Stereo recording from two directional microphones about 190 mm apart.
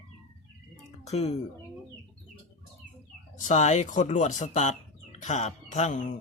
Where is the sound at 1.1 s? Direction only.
35° left (ahead or behind).